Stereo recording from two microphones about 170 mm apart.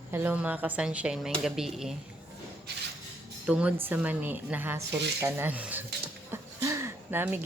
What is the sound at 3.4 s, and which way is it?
A woman's voice, 5° right (ahead or behind).